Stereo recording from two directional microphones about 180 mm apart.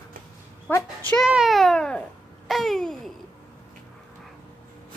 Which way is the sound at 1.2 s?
5° right (ahead or behind).